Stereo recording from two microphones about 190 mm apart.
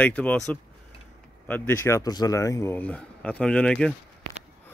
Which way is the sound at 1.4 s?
10° left (ahead or behind).